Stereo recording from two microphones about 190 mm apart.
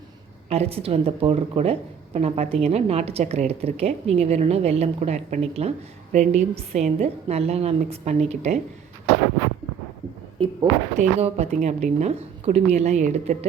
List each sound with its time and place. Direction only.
0.5 s a woman's voice: 30° right (ahead or behind)
10.4 s speech: 25° right (ahead or behind)
10.9 s a woman's voice: 35° right (ahead or behind)